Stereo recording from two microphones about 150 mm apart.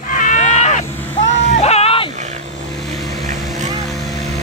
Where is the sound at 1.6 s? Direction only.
45° left (ahead or behind).